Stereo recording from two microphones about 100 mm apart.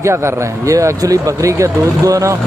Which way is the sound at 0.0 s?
30° right (ahead or behind).